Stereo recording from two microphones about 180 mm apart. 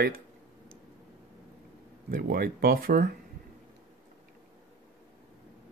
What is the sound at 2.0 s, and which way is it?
Speech, 55° right (ahead or behind).